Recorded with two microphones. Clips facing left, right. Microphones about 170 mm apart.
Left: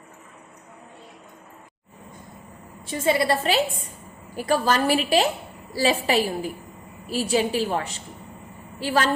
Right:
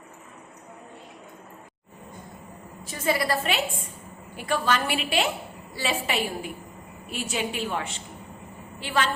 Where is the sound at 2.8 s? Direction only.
30° left (ahead or behind).